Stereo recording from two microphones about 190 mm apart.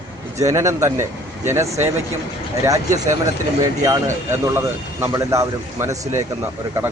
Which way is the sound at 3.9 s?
15° right (ahead or behind).